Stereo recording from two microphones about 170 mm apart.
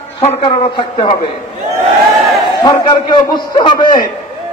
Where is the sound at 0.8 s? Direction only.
30° left (ahead or behind).